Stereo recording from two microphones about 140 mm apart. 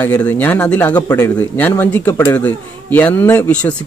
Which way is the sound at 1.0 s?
20° left (ahead or behind).